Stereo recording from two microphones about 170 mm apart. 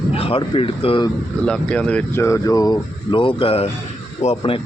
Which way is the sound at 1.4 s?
5° left (ahead or behind).